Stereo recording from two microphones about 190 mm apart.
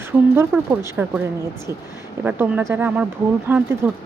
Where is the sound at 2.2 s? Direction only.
10° right (ahead or behind).